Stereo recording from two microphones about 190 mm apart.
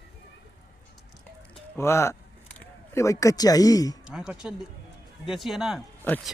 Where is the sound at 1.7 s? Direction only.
15° left (ahead or behind).